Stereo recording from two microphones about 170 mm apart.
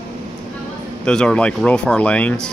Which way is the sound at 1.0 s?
5° left (ahead or behind).